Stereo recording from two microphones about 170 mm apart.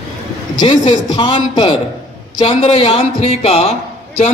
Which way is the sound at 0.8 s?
25° left (ahead or behind).